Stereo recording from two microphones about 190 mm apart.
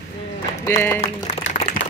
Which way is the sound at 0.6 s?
10° left (ahead or behind).